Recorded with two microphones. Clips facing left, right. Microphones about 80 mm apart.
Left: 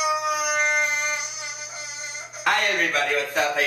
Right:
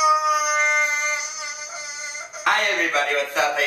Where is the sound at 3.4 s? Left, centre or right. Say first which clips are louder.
Right 2 dB; centre.